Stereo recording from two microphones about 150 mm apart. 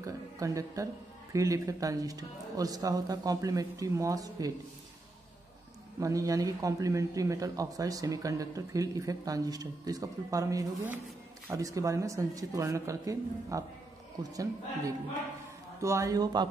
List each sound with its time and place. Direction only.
0.0 s speech: 20° right (ahead or behind)
5.9 s speech: 20° right (ahead or behind)